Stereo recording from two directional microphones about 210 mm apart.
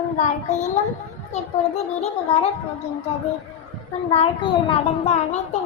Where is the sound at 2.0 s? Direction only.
30° left (ahead or behind).